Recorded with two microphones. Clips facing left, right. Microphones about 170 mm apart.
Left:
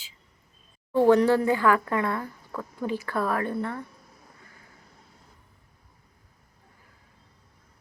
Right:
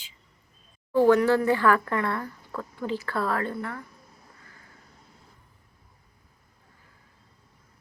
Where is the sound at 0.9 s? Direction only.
25° left (ahead or behind).